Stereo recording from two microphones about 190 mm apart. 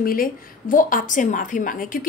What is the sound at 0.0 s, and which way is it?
A woman's voice, 50° left (ahead or behind).